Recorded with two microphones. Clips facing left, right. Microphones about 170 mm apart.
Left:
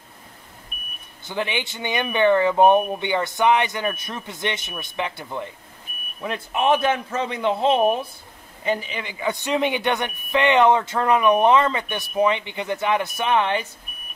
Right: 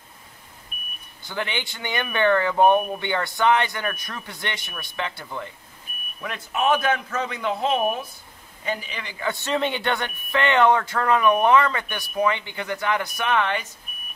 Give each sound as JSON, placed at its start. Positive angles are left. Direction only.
{"t": 1.2, "sound": "speech", "side_deg": 20}